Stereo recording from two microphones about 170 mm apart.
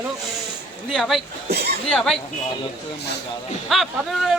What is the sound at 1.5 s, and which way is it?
Speech, 70° right (ahead or behind).